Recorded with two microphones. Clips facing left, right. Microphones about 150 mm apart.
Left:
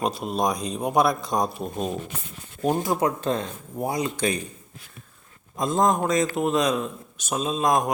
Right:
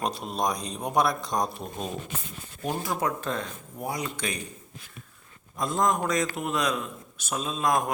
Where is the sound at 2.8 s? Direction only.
25° left (ahead or behind).